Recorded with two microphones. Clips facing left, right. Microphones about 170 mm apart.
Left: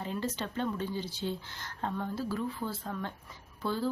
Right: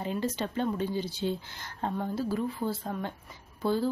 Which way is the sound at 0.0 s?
15° right (ahead or behind).